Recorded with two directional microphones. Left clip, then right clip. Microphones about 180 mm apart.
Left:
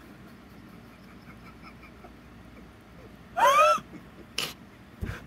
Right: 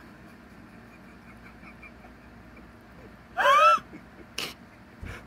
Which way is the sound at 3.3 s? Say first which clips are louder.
Right 1 dB; 30° left (ahead or behind).